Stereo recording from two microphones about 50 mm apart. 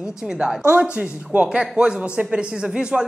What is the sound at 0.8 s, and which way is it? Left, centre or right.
A man's voice, right.